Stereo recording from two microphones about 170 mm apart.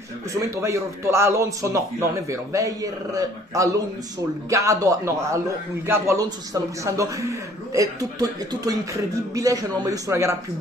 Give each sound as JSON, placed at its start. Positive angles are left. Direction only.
{"t": 0.3, "sound": "speech", "side_deg": -20}